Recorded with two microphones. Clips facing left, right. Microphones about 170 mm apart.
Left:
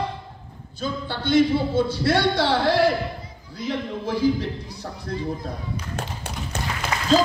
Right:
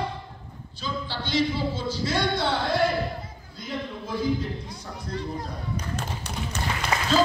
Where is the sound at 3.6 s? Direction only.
85° left.